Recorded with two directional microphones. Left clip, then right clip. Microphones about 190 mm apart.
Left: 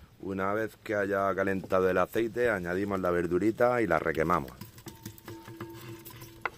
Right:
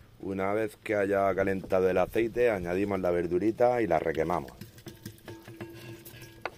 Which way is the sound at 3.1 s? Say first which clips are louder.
Even; 15° left (ahead or behind).